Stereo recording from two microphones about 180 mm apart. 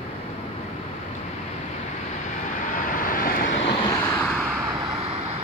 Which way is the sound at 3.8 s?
15° left (ahead or behind).